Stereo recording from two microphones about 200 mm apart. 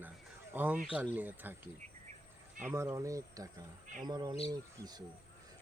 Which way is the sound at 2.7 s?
15° right (ahead or behind).